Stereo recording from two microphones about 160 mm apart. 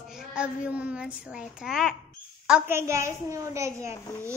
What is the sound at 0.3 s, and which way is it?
A woman's voice, 5° right (ahead or behind).